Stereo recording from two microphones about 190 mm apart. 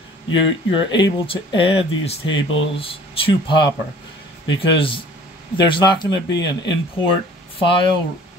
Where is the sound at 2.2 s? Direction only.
90° left.